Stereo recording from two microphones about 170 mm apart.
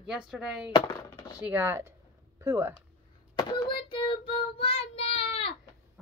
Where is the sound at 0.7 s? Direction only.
25° left (ahead or behind).